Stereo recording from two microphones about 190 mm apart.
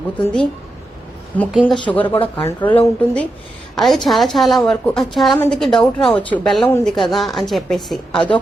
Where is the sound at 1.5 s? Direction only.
5° right (ahead or behind).